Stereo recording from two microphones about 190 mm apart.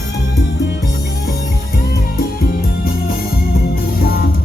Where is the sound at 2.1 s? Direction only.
55° left (ahead or behind).